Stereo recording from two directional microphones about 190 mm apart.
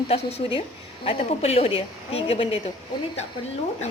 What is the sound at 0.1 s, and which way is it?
Speech, 30° left (ahead or behind).